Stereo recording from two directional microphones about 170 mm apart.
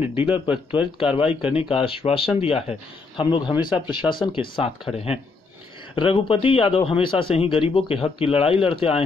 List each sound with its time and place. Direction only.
0.0 s speech: 10° right (ahead or behind)
0.9 s speech: 35° left (ahead or behind)